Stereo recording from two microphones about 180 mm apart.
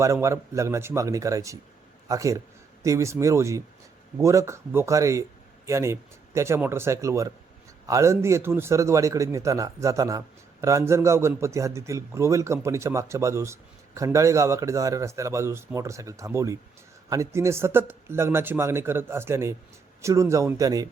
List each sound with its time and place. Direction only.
0.0 s a man's voice: 15° right (ahead or behind)